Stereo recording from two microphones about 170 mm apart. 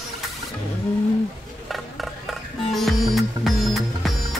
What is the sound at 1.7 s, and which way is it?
Music, centre (ahead or behind).